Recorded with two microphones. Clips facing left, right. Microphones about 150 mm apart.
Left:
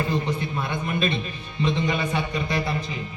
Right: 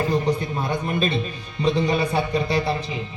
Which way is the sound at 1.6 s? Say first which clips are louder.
Right 4 dB; 35° right (ahead or behind).